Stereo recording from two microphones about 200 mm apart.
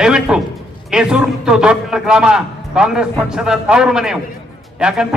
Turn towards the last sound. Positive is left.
turn(degrees=-5)  # may be behind; listen again after turning